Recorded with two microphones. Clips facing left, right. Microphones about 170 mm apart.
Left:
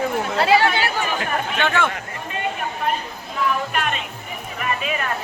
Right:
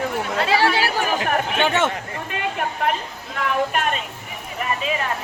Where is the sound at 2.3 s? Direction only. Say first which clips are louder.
Even; 75° right (ahead or behind).